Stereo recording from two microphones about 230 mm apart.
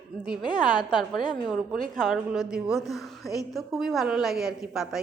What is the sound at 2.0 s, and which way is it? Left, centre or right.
A woman's voice, centre.